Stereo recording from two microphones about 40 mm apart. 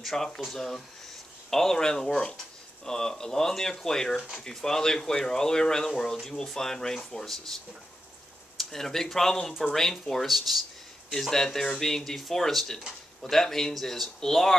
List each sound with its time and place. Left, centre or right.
0.0 s speech: centre
11.1 s speech: centre